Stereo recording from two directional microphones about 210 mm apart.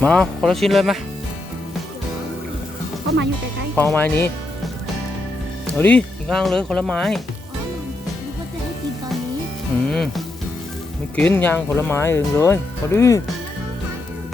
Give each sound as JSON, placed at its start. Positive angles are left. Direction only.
{"t": 0.0, "sound": "speech", "side_deg": 5}
{"t": 3.8, "sound": "speech", "side_deg": 10}
{"t": 5.7, "sound": "speech", "side_deg": 5}
{"t": 9.9, "sound": "speech", "side_deg": 0}